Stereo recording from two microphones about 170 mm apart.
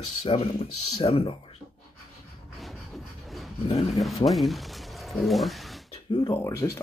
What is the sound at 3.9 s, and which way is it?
Speech, centre (ahead or behind).